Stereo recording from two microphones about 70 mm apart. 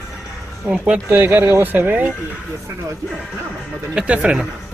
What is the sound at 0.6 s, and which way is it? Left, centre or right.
Speech, centre.